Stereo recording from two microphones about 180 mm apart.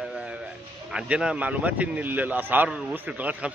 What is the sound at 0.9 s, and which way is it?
Speech, 5° right (ahead or behind).